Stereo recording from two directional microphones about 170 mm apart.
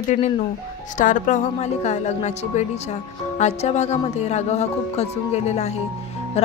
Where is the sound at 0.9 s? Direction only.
50° left (ahead or behind).